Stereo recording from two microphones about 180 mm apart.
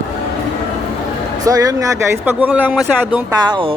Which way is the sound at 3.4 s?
25° right (ahead or behind).